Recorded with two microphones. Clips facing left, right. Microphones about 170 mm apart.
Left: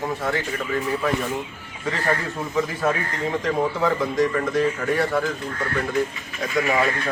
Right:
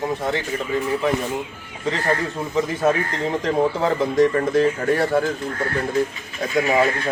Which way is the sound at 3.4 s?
25° right (ahead or behind).